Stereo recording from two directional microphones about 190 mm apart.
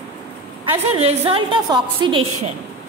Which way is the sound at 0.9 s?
30° right (ahead or behind).